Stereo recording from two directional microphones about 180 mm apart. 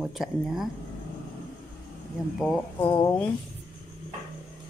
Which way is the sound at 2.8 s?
25° left (ahead or behind).